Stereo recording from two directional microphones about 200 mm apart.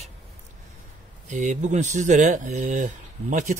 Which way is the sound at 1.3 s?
35° right (ahead or behind).